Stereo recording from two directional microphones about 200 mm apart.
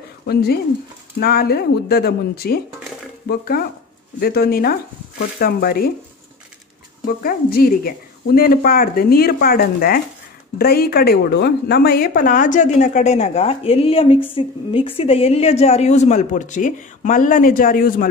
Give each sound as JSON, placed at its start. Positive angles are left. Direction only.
{"t": 0.3, "sound": "a woman's voice", "side_deg": 50}
{"t": 7.2, "sound": "a woman's voice", "side_deg": 50}